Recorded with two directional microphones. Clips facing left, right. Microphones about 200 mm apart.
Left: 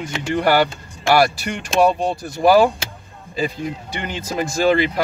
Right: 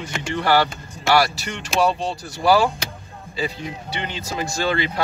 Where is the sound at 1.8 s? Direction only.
50° left (ahead or behind).